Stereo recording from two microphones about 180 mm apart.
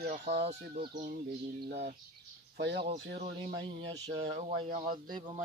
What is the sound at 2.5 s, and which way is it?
Speech, 65° right (ahead or behind).